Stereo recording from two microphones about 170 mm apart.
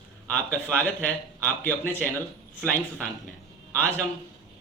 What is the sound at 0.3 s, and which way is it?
Speech, 10° left (ahead or behind).